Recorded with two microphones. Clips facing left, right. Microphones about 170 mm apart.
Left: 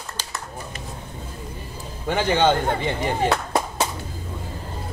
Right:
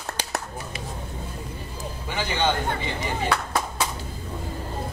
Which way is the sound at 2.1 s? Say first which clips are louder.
Left 7 dB; 55° left (ahead or behind).